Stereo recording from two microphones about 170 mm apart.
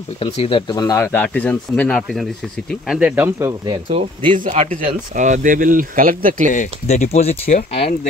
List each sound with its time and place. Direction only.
0.2 s speech: 30° left (ahead or behind); by 3.8 s 20° right (ahead or behind)
4.3 s speech: 45° right (ahead or behind)
6.5 s speech: 45° left (ahead or behind)
7.4 s speech: 60° left (ahead or behind)